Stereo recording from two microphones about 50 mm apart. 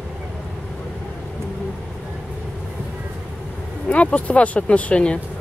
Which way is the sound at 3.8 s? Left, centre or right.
Left.